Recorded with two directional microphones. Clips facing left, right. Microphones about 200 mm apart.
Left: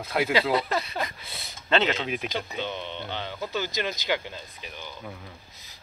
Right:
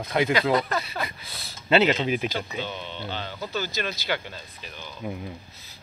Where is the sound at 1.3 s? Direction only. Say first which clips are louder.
Even; 25° left (ahead or behind).